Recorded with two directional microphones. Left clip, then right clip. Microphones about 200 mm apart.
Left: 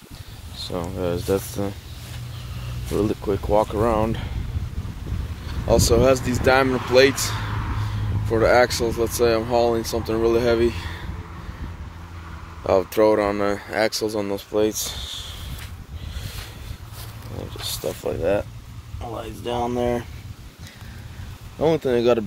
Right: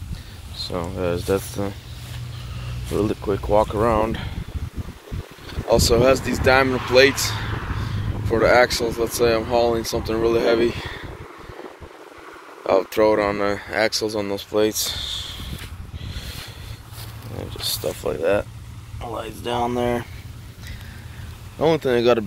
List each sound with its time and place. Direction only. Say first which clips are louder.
0.6 s speech: right 1 dB; 5° left (ahead or behind)
2.9 s speech: even; 10° left (ahead or behind)
5.7 s speech: right 1 dB; 10° left (ahead or behind)
7.4 s a sound: right 1 dB; 50° left (ahead or behind)
7.9 s speech: right 1 dB; 15° left (ahead or behind)
12.6 s speech: even; 20° left (ahead or behind)
17.5 s speech: right 3 dB; centre (ahead or behind)
21.5 s speech: right 1 dB; 5° left (ahead or behind)